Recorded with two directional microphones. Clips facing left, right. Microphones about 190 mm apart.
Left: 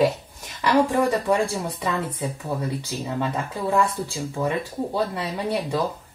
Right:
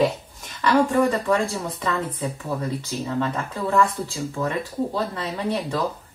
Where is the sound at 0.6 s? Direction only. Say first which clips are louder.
Right 1 dB; 15° left (ahead or behind).